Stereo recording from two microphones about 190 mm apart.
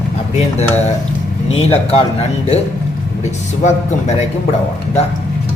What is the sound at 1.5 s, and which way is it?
Speech, 30° left (ahead or behind).